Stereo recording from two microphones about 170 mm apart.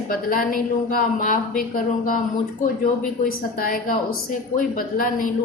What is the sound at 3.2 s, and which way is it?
A woman's voice, 55° left (ahead or behind).